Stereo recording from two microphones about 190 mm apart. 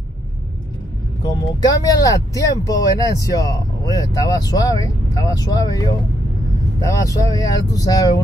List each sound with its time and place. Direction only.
1.2 s speech: 20° left (ahead or behind)